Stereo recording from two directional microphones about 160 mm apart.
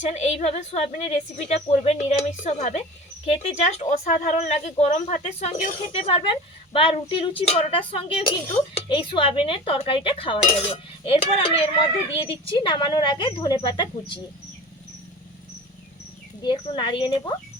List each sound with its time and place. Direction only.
0.0 s speech: 45° left (ahead or behind); by 14.2 s 25° left (ahead or behind)
16.4 s speech: 30° left (ahead or behind)